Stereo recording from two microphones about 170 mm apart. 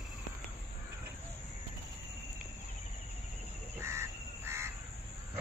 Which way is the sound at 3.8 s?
15° right (ahead or behind).